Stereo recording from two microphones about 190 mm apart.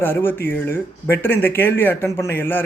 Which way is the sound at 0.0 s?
10° left (ahead or behind).